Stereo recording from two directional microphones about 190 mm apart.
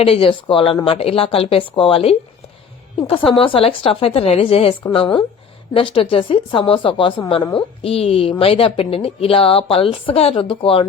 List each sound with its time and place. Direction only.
0.0 s speech: 30° left (ahead or behind)
3.2 s speech: 30° left (ahead or behind)